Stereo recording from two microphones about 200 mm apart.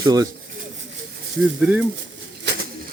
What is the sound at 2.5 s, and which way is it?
Pigeon, 60° right (ahead or behind).